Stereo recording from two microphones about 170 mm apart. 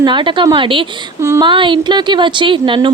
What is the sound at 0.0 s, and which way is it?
Speech, 30° right (ahead or behind).